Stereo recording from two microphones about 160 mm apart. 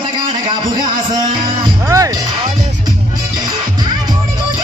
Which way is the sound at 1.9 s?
20° right (ahead or behind).